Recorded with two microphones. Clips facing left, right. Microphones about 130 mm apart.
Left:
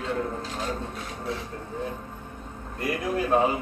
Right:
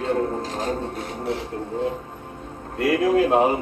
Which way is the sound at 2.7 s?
90° right.